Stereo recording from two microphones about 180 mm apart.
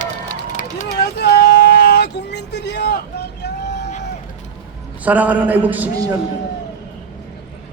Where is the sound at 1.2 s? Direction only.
65° left (ahead or behind).